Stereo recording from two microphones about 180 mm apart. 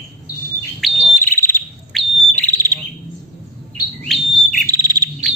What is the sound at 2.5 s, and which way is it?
Bird, 20° right (ahead or behind).